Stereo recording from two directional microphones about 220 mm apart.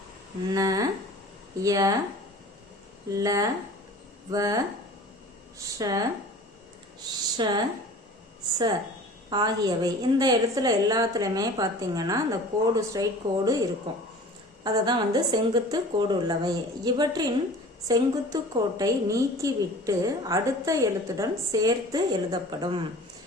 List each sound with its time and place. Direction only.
0.5 s a woman's voice: 15° right (ahead or behind)
3.1 s a woman's voice: 15° right (ahead or behind)
7.3 s speech: 20° right (ahead or behind)
9.3 s a woman's voice: 20° right (ahead or behind)